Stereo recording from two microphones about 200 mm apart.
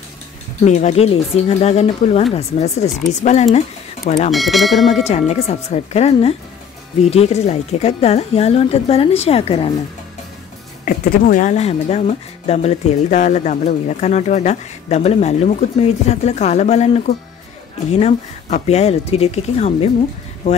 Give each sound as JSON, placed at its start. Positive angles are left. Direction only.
{"t": 0.7, "sound": "a woman's voice", "side_deg": 35}
{"t": 4.3, "sound": "speech", "side_deg": 0}
{"t": 5.0, "sound": "a woman's voice", "side_deg": 35}
{"t": 10.9, "sound": "a woman's voice", "side_deg": 40}